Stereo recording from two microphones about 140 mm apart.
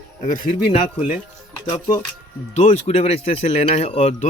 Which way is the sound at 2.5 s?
50° left (ahead or behind).